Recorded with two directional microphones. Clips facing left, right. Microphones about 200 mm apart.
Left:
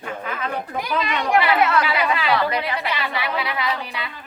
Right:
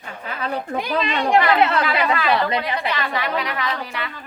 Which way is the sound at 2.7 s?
10° left (ahead or behind).